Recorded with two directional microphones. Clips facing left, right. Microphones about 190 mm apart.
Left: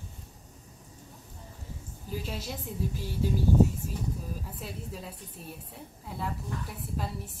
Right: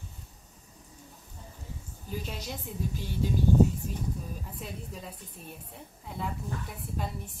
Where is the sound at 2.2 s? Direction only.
5° left (ahead or behind).